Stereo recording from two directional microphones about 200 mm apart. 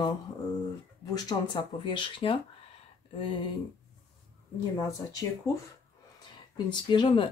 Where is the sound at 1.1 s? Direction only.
25° left (ahead or behind).